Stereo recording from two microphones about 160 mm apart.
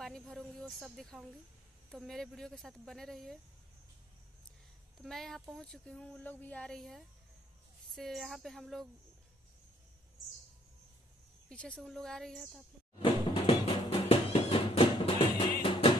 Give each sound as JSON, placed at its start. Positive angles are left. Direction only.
{"t": 0.0, "sound": "speech", "side_deg": 0}
{"t": 5.0, "sound": "speech", "side_deg": 0}
{"t": 11.4, "sound": "speech", "side_deg": 5}
{"t": 13.0, "sound": "music", "side_deg": 35}